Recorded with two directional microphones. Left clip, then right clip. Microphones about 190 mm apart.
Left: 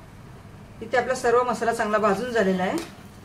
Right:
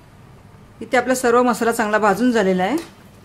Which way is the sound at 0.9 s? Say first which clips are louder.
Right 5 dB; 65° right (ahead or behind).